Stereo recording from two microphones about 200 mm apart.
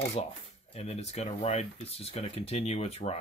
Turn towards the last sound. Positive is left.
turn(degrees=30)  # may be behind; listen again after turning